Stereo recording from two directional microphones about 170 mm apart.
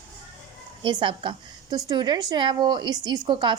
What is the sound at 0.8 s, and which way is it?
A woman's voice, 30° right (ahead or behind).